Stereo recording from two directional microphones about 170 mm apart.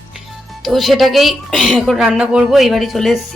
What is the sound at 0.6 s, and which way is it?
A woman's voice, centre (ahead or behind).